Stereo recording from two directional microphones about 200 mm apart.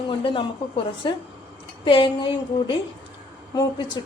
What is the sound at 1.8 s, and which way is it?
A woman's voice, 25° left (ahead or behind).